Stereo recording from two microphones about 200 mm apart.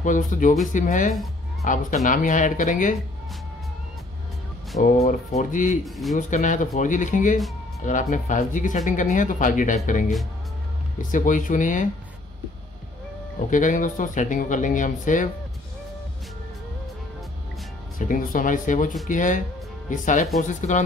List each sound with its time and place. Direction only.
0.0 s speech: 40° left (ahead or behind)
4.8 s speech: 35° left (ahead or behind)
5.9 s speech: centre (ahead or behind)
6.1 s speech: 40° left (ahead or behind)
13.5 s speech: 40° left (ahead or behind)
17.9 s speech: 40° left (ahead or behind)